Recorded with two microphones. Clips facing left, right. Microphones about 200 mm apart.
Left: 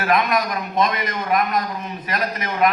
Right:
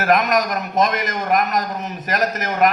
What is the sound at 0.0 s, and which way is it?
A man's voice, 45° right (ahead or behind).